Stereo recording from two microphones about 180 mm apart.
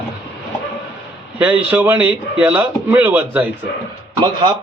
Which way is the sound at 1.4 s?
10° right (ahead or behind).